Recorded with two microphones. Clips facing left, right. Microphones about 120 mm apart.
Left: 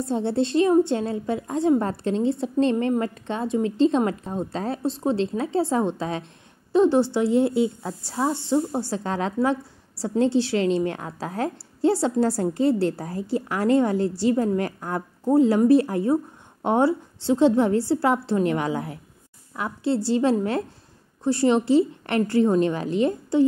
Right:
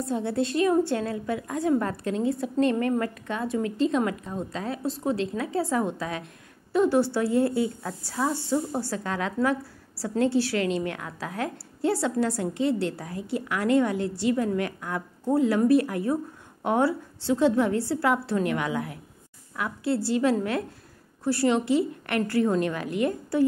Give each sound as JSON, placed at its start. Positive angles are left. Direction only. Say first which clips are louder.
{"t": 0.1, "sound": "a woman's voice", "louder": "left 4 dB", "side_deg": 30}